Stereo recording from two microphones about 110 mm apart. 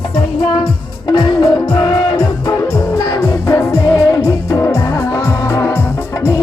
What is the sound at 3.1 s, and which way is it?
Music, 30° left (ahead or behind).